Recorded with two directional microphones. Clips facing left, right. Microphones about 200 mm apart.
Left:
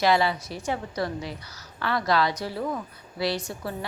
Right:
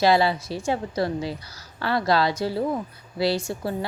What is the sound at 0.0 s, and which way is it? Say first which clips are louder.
A woman's voice: right 3 dB; 30° right (ahead or behind).